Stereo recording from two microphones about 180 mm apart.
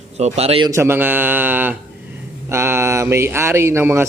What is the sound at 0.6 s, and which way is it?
A man's voice, 15° right (ahead or behind).